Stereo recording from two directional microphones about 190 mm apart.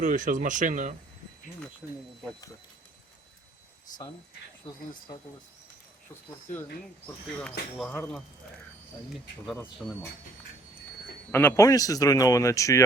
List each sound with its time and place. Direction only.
0.0 s speech: 45° right (ahead or behind)
6.5 s speech: 10° left (ahead or behind)
7.8 s speech: 5° left (ahead or behind)
9.8 s speech: centre (ahead or behind)
11.3 s speech: 10° left (ahead or behind)